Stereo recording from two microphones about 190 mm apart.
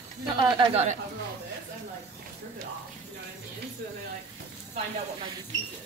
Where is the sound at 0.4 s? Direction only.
25° right (ahead or behind).